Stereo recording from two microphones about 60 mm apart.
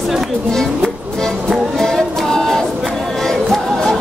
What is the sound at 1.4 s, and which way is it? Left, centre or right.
Music, centre.